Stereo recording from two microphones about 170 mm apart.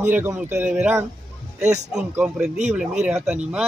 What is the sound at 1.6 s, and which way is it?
Speech, 45° right (ahead or behind).